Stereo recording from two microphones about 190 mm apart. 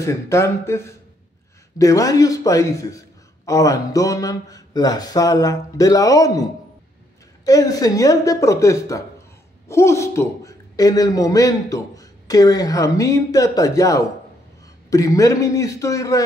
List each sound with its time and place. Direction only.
0.0 s a man's voice: 15° left (ahead or behind)
7.4 s a man's voice: 20° left (ahead or behind)